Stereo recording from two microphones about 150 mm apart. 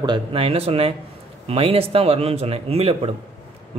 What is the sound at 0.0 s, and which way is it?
A man's voice, 35° right (ahead or behind).